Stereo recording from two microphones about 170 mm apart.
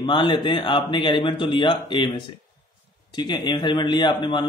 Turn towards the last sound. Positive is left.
turn(degrees=25)  # may be behind; listen again after turning